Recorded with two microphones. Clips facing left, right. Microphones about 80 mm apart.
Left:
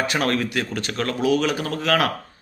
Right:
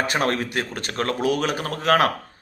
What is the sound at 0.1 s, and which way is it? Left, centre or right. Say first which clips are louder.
A man's voice: even; right.